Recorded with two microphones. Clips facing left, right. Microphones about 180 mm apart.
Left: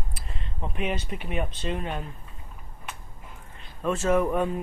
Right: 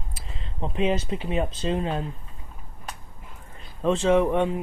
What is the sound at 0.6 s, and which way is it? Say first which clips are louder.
Speech: right 6 dB; 30° right (ahead or behind).